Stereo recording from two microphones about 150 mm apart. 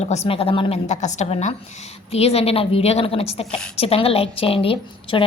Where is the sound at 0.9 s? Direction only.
50° left (ahead or behind).